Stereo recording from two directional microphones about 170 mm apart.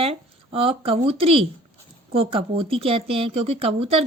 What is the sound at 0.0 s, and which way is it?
A woman's voice, 35° right (ahead or behind).